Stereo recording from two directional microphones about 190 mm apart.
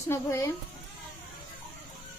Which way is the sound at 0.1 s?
15° left (ahead or behind).